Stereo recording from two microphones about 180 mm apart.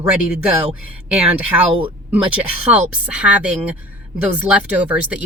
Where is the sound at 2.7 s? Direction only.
5° right (ahead or behind).